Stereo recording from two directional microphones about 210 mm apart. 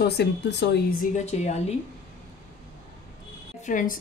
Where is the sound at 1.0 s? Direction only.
35° left (ahead or behind).